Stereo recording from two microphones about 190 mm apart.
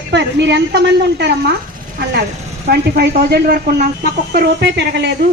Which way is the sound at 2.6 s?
55° right (ahead or behind).